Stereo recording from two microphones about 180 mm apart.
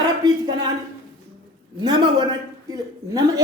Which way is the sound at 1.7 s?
25° right (ahead or behind).